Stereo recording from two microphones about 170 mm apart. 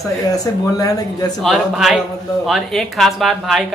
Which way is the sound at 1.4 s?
Centre (ahead or behind).